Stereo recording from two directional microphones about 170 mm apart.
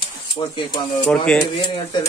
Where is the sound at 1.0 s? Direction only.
5° left (ahead or behind).